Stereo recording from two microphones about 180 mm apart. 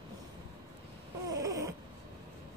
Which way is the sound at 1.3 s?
20° right (ahead or behind).